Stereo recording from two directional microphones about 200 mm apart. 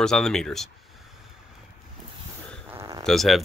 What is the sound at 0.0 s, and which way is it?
Speech, 5° left (ahead or behind).